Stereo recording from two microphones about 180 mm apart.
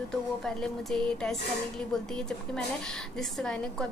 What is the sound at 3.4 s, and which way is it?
Speech, 5° left (ahead or behind).